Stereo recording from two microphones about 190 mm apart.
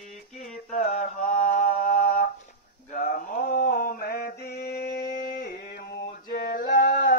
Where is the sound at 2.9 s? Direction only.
45° left (ahead or behind).